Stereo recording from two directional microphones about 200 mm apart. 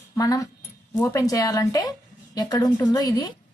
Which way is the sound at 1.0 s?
15° left (ahead or behind).